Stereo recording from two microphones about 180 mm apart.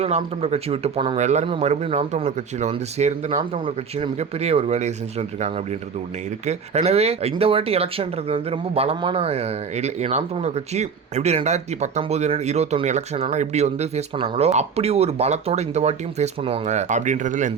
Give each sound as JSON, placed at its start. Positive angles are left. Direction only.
{"t": 0.0, "sound": "speech", "side_deg": -35}